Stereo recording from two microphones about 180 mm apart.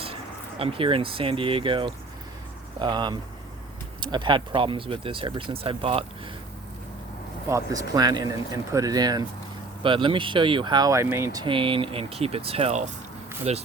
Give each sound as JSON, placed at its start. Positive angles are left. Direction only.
{"t": 0.6, "sound": "speech", "side_deg": -30}
{"t": 7.4, "sound": "speech", "side_deg": -20}